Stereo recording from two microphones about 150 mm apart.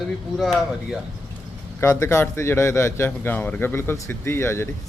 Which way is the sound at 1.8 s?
20° left (ahead or behind).